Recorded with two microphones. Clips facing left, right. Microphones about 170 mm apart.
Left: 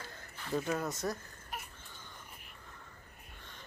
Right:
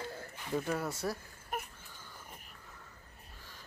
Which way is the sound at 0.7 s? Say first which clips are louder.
Even; 10° right (ahead or behind).